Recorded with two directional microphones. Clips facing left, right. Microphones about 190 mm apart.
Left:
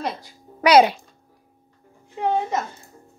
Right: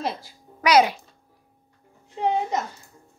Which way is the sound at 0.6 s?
30° left (ahead or behind).